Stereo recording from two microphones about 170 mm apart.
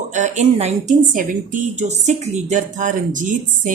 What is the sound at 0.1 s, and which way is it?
Speech, 45° right (ahead or behind).